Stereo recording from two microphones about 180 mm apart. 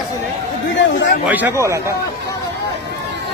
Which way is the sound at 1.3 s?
10° right (ahead or behind).